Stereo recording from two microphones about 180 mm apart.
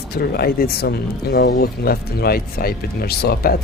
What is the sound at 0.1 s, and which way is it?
Speech, 60° left (ahead or behind).